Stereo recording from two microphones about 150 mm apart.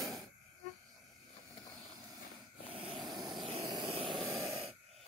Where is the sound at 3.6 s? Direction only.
25° right (ahead or behind).